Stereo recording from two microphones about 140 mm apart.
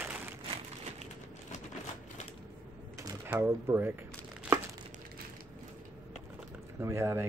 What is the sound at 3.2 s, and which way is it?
Speech, 15° right (ahead or behind).